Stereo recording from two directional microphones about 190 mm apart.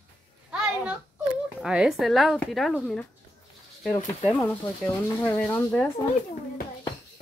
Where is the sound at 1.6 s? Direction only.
5° right (ahead or behind).